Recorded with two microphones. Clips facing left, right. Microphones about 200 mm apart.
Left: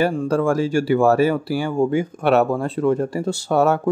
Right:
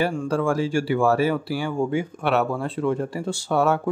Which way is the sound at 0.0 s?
40° left (ahead or behind).